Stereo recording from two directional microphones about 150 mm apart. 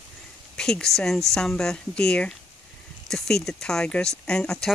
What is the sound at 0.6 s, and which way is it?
Speech, 5° left (ahead or behind).